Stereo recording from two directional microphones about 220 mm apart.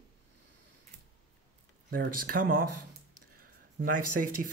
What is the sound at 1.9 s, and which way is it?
Speech, 40° right (ahead or behind).